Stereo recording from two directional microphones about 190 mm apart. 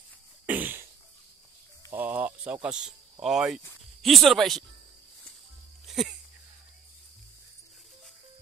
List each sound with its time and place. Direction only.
0.5 s cough: 10° right (ahead or behind)
1.9 s speech: 10° right (ahead or behind)
5.9 s a sound: centre (ahead or behind)